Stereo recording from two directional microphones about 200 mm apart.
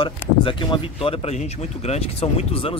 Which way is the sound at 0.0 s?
25° left (ahead or behind).